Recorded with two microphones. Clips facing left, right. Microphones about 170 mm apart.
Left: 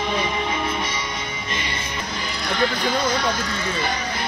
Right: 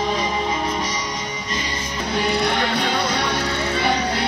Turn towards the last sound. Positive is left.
turn(degrees=-70)  # may be behind; listen again after turning